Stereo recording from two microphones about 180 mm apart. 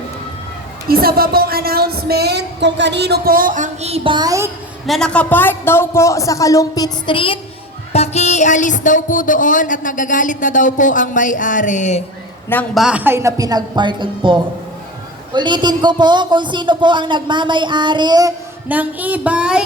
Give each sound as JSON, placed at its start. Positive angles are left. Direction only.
{"t": 0.9, "sound": "a woman's voice", "side_deg": -55}
{"t": 4.9, "sound": "speech", "side_deg": 5}
{"t": 12.7, "sound": "speech", "side_deg": -5}
{"t": 18.7, "sound": "a sound", "side_deg": -10}